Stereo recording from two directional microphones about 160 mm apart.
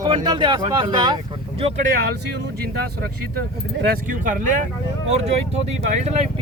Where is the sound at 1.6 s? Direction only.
40° right (ahead or behind).